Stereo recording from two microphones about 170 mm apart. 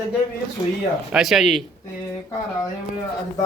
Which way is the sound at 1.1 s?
Centre (ahead or behind).